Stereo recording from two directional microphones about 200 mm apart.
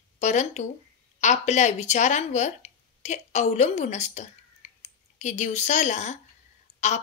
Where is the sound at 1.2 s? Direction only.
35° left (ahead or behind).